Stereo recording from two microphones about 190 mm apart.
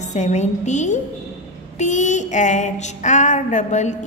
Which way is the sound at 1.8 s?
40° left (ahead or behind).